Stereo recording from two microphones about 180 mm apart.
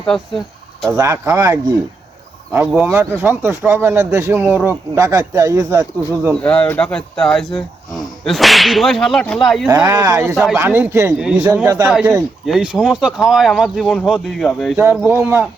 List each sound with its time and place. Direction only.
0.9 s speech: 15° right (ahead or behind)
6.4 s speech: 10° left (ahead or behind)
9.6 s speech: 15° right (ahead or behind)
10.3 s speech: 5° right (ahead or behind)
11.9 s speech: 5° right (ahead or behind)
15.0 s speech: 15° right (ahead or behind)